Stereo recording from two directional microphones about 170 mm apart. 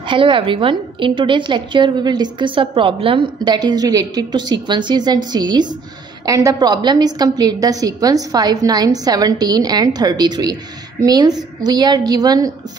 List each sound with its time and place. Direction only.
0.1 s a woman's voice: 30° right (ahead or behind)